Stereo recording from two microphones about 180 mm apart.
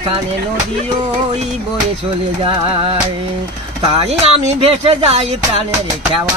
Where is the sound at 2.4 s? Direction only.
30° right (ahead or behind).